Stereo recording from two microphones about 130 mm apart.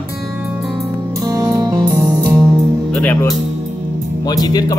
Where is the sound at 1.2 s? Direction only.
30° right (ahead or behind).